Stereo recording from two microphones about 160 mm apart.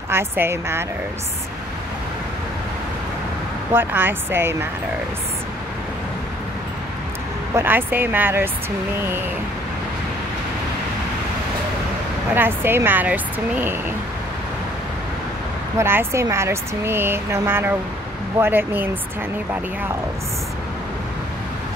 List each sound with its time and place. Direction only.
0.1 s speech: 15° right (ahead or behind)
3.7 s speech: 15° right (ahead or behind)
7.5 s speech: 10° right (ahead or behind)
12.4 s speech: 15° right (ahead or behind)
15.8 s speech: 15° right (ahead or behind)